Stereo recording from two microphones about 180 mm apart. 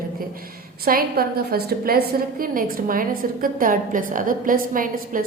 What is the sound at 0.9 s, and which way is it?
A woman's voice, 55° right (ahead or behind).